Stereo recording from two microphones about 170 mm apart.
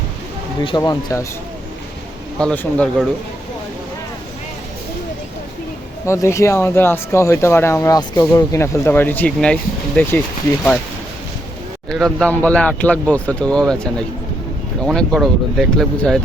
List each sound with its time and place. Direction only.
0.8 s speech: 20° left (ahead or behind)
2.4 s speech: 5° left (ahead or behind)
6.1 s speech: 15° left (ahead or behind)
11.9 s speech: 5° left (ahead or behind)
14.8 s speech: centre (ahead or behind)